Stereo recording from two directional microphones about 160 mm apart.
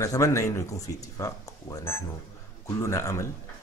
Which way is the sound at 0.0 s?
20° left (ahead or behind).